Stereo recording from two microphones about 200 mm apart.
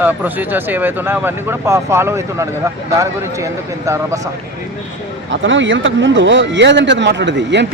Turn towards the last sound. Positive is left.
turn(degrees=-60)  # may be behind; listen again after turning